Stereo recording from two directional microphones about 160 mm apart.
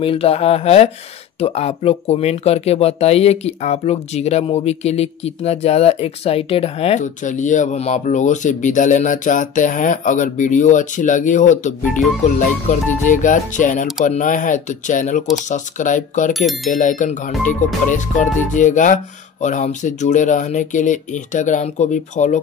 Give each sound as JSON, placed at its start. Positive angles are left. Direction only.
{"t": 0.0, "sound": "speech", "side_deg": 35}
{"t": 16.3, "sound": "speech", "side_deg": 0}
{"t": 16.7, "sound": "speech", "side_deg": 55}